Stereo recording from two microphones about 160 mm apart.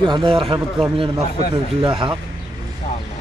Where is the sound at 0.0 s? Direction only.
30° right (ahead or behind).